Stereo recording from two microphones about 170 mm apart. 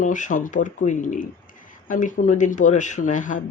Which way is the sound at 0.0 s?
50° left (ahead or behind).